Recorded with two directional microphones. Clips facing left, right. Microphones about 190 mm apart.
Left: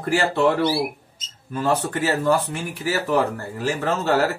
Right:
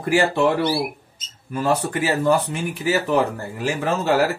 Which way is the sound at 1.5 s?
10° right (ahead or behind).